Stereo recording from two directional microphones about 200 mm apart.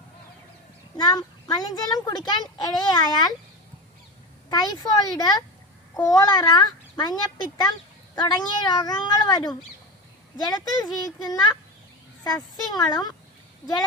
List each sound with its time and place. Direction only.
0.9 s a child's voice: 20° left (ahead or behind)
4.5 s a child's voice: 20° left (ahead or behind)
12.2 s a child's voice: 20° left (ahead or behind)